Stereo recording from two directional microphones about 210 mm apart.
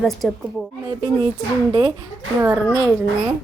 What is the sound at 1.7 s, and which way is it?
A woman's voice, 20° right (ahead or behind).